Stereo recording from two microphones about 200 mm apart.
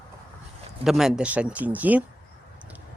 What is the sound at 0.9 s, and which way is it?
Speech, centre (ahead or behind).